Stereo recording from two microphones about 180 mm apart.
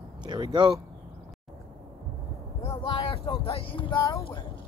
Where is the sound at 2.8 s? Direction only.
30° left (ahead or behind).